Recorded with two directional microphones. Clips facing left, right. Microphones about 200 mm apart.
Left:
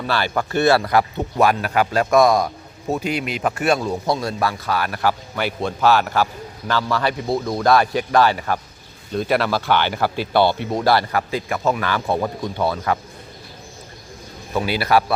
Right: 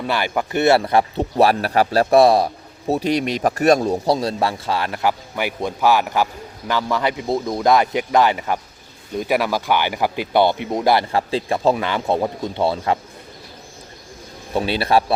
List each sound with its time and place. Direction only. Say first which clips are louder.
0.1 s speech: even; 15° right (ahead or behind)
14.5 s speech: right 1 dB; 30° right (ahead or behind)